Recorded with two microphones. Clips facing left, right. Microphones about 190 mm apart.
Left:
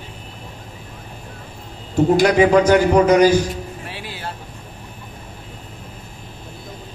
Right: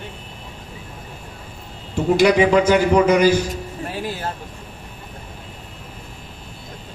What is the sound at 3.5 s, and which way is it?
Music, 45° right (ahead or behind).